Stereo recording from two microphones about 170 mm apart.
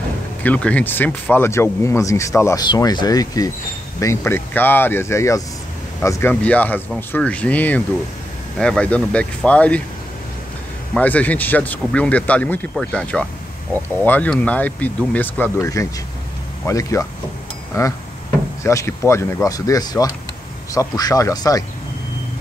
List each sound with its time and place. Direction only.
0.4 s speech: 10° left (ahead or behind)
11.0 s speech: 10° left (ahead or behind)